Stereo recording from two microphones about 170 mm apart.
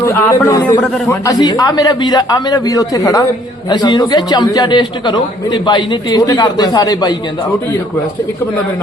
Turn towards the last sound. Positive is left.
turn(degrees=25)  # may be behind; listen again after turning